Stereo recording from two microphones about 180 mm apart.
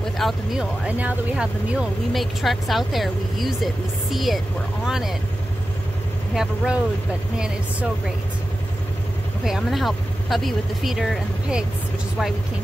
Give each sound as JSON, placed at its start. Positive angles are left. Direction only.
{"t": 0.2, "sound": "speech", "side_deg": 0}
{"t": 6.3, "sound": "speech", "side_deg": -5}
{"t": 9.4, "sound": "speech", "side_deg": 0}